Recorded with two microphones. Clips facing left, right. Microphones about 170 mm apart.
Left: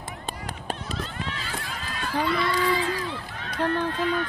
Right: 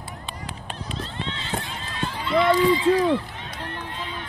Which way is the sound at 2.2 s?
20° right (ahead or behind).